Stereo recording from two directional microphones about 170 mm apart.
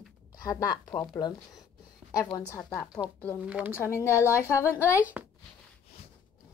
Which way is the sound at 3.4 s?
10° right (ahead or behind).